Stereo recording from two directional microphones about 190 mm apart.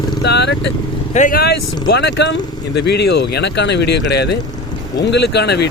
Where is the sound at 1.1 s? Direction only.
45° left (ahead or behind).